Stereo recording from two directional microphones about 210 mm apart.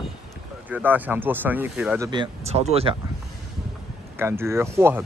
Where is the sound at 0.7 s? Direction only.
10° right (ahead or behind).